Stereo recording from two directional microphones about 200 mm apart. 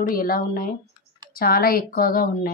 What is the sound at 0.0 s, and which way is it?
A woman's voice, 45° left (ahead or behind).